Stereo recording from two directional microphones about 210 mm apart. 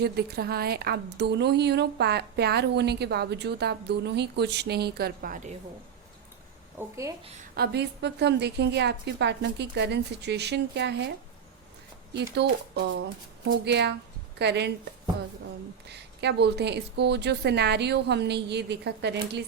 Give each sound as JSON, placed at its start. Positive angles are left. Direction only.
{"t": 0.0, "sound": "speech", "side_deg": -50}
{"t": 6.7, "sound": "a woman's voice", "side_deg": -15}
{"t": 7.5, "sound": "speech", "side_deg": -50}
{"t": 12.1, "sound": "speech", "side_deg": -55}
{"t": 15.9, "sound": "speech", "side_deg": -55}